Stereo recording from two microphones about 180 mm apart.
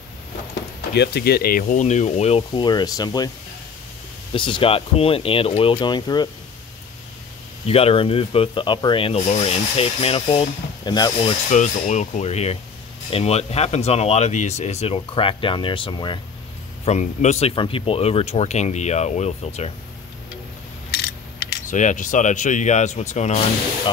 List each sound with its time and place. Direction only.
0.9 s rub: 65° left (ahead or behind); by 3.3 s 20° left (ahead or behind)
4.3 s rub: 30° left (ahead or behind)
7.6 s rub: 30° left (ahead or behind)
11.5 s rub: 40° left (ahead or behind); by 16.2 s 25° left (ahead or behind)
16.8 s rub: 40° left (ahead or behind)
21.6 s rub: 45° left (ahead or behind)